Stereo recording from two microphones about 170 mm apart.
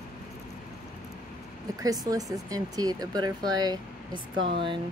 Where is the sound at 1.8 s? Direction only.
20° right (ahead or behind).